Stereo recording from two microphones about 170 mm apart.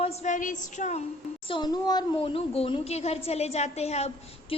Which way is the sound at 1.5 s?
25° left (ahead or behind).